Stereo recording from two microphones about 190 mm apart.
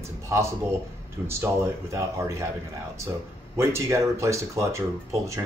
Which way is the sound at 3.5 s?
15° right (ahead or behind).